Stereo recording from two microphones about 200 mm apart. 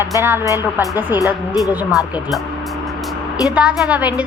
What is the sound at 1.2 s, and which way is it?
Speech, 15° left (ahead or behind).